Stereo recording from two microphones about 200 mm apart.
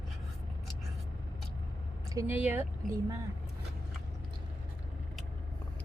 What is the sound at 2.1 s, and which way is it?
Speech, 10° right (ahead or behind).